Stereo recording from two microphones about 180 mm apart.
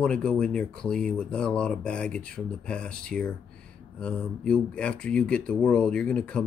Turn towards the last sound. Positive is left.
turn(degrees=5)  # may be behind; listen again after turning